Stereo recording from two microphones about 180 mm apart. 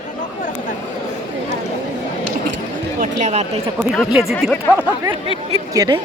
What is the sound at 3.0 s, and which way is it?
Speech, 40° right (ahead or behind).